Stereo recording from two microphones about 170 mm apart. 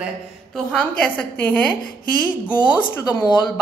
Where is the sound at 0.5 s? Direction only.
5° left (ahead or behind).